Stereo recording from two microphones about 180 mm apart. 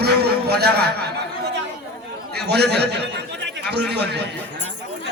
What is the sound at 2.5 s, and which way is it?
A man's voice, 65° right (ahead or behind).